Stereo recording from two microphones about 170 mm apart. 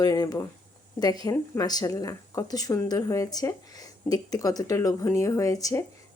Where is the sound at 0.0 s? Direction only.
25° left (ahead or behind).